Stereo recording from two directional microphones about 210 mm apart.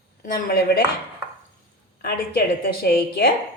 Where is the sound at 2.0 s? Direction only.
45° left (ahead or behind).